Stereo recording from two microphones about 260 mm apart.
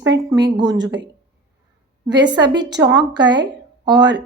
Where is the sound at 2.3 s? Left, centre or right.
Centre.